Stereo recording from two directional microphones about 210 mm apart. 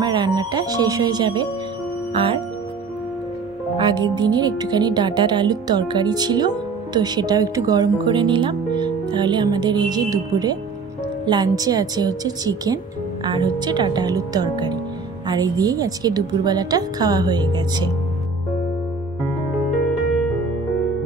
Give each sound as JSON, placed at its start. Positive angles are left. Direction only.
{"t": 0.0, "sound": "speech", "side_deg": -20}
{"t": 3.7, "sound": "speech", "side_deg": -20}